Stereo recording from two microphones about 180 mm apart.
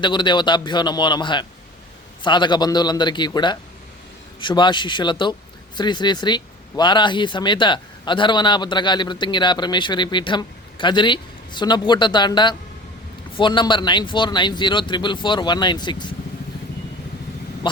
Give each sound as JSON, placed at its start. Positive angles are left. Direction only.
{"t": 0.0, "sound": "speech", "side_deg": 25}